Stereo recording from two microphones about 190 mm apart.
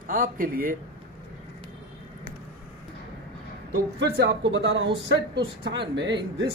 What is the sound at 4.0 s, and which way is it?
A man's voice, 65° right (ahead or behind).